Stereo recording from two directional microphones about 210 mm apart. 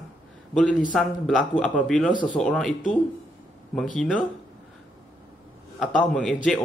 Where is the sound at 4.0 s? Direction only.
5° left (ahead or behind).